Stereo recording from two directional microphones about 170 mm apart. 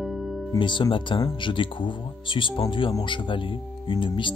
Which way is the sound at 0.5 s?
25° left (ahead or behind).